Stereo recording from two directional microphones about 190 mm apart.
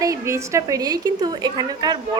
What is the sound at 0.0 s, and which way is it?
A woman's voice, 15° right (ahead or behind).